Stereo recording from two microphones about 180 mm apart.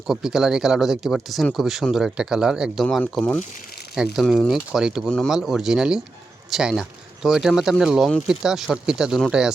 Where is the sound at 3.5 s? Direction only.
60° left (ahead or behind).